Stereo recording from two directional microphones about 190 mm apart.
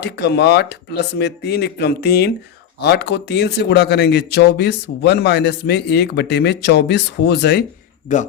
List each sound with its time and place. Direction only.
0.0 s speech: 60° left (ahead or behind)
8.1 s speech: 40° left (ahead or behind)